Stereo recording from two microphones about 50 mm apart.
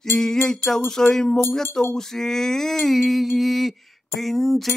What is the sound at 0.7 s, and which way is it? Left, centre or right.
Mantra, centre.